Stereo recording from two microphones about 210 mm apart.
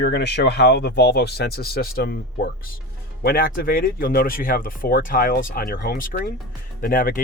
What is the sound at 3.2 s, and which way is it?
Speech, 45° left (ahead or behind).